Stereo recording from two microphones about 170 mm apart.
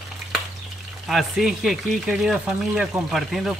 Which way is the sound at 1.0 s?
Centre (ahead or behind).